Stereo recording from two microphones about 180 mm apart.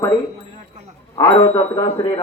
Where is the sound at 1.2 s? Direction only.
30° left (ahead or behind).